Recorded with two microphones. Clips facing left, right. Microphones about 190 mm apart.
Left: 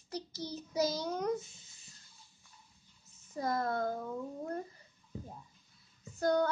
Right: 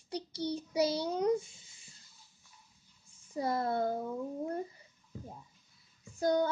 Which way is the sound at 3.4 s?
30° right (ahead or behind).